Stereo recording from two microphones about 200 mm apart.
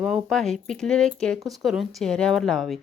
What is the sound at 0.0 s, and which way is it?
A woman's voice, centre (ahead or behind).